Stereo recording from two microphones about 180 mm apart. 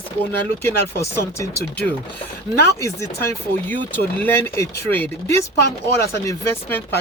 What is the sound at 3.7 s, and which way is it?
Speech, 10° left (ahead or behind).